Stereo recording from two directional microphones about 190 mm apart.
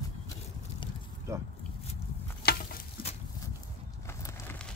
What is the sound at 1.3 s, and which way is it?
Speech, 15° right (ahead or behind).